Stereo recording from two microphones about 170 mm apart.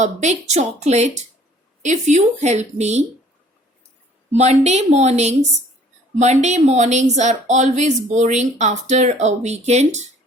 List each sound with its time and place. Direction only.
0.0 s a woman's voice: 45° right (ahead or behind)
4.3 s a woman's voice: 40° right (ahead or behind)